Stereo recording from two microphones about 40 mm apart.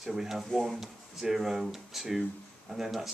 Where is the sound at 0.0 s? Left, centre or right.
Centre.